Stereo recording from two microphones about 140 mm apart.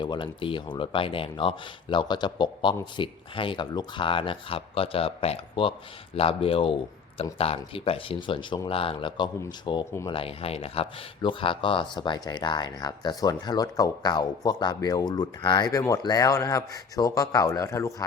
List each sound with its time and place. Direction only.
0.0 s speech: 35° left (ahead or behind)